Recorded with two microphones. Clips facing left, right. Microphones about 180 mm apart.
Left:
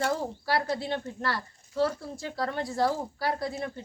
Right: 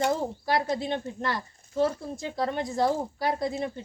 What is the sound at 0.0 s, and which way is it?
A woman's voice, 20° right (ahead or behind).